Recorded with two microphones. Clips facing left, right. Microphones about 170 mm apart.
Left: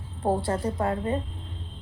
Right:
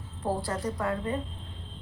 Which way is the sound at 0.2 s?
30° left (ahead or behind).